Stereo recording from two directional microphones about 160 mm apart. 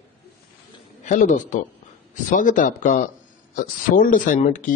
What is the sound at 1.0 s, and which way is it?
A man's voice, 50° left (ahead or behind).